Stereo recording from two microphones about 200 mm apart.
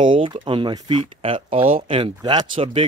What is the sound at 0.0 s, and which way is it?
Speech, 25° right (ahead or behind).